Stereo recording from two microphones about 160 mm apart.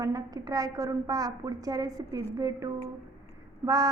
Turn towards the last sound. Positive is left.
turn(degrees=-20)  # may be behind; listen again after turning